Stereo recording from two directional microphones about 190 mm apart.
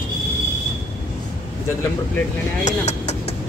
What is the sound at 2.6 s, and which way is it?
Vehicle, 35° left (ahead or behind).